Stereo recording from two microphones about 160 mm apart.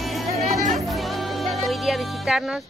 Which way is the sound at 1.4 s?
Centre (ahead or behind).